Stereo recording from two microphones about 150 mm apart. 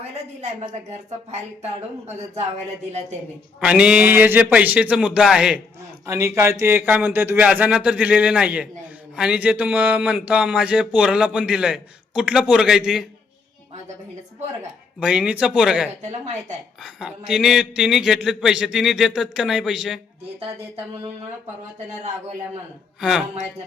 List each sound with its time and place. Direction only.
0.9 s speech: 50° right (ahead or behind)
3.6 s speech: 5° right (ahead or behind)
6.1 s speech: 20° right (ahead or behind); by 13.1 s 5° right (ahead or behind)
14.9 s a man's voice: 5° right (ahead or behind)
16.0 s speech: 50° right (ahead or behind)
16.8 s a man's voice: 5° right (ahead or behind)
23.0 s a man's voice: 5° right (ahead or behind)